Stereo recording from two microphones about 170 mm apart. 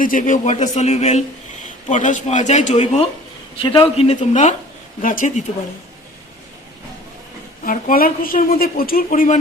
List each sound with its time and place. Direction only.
0.0 s a man's voice: 50° left (ahead or behind)
3.6 s a man's voice: 30° left (ahead or behind); by 5.3 s 50° left (ahead or behind)
7.6 s speech: 55° left (ahead or behind)